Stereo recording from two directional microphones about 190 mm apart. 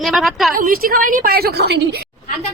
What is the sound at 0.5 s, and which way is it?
A woman's voice, 50° right (ahead or behind).